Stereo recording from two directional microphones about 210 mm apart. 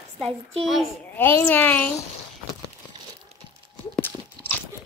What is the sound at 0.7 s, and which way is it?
A child's voice, centre (ahead or behind).